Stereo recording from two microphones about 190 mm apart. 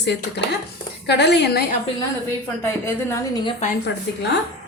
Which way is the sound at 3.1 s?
20° left (ahead or behind).